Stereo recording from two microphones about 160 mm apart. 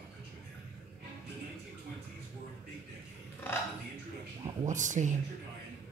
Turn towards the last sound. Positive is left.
turn(degrees=-50)  # may be behind; listen again after turning